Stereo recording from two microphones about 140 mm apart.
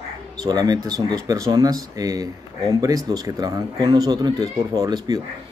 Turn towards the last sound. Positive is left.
turn(degrees=-30)  # may be behind; listen again after turning